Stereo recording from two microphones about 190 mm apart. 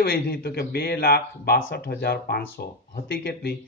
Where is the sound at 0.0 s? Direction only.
55° left (ahead or behind).